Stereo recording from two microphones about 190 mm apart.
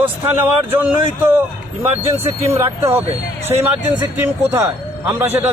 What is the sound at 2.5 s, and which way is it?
A man's voice, 15° right (ahead or behind).